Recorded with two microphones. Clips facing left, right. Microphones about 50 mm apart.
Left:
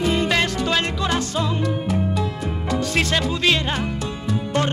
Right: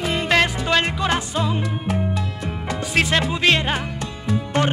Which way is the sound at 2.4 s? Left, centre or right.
Centre.